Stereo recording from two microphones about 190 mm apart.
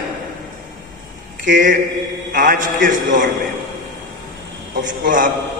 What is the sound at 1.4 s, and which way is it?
A man's voice, 45° right (ahead or behind).